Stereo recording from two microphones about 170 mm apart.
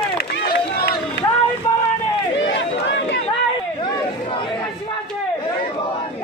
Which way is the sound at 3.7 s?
30° left (ahead or behind).